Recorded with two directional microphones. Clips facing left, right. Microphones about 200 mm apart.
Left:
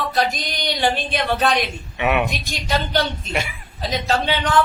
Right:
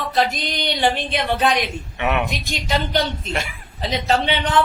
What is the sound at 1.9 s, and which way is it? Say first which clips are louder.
Speech: left 2 dB; 5° left (ahead or behind).